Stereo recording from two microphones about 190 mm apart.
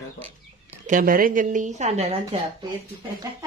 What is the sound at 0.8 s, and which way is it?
A woman's voice, 45° right (ahead or behind).